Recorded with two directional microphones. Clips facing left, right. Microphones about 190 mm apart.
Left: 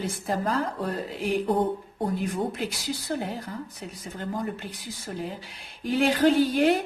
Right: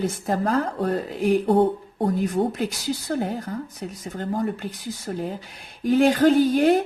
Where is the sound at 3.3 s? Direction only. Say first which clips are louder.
Right 5 dB; 45° right (ahead or behind).